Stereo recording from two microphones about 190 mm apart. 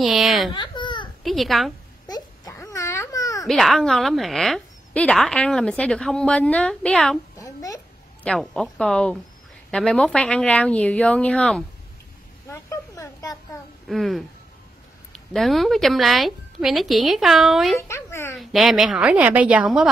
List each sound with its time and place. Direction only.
0.0 s speech: centre (ahead or behind)
0.5 s baby cry: 25° left (ahead or behind)
1.2 s a woman's voice: centre (ahead or behind)
2.0 s baby cry: 20° left (ahead or behind)
3.4 s a woman's voice: centre (ahead or behind)
7.3 s a sound: 20° left (ahead or behind)
8.2 s a woman's voice: 5° left (ahead or behind)
12.4 s a sound: 15° left (ahead or behind)
13.8 s a woman's voice: centre (ahead or behind)
15.3 s a woman's voice: centre (ahead or behind)
17.7 s speech: 15° left (ahead or behind)
18.3 s a woman's voice: centre (ahead or behind)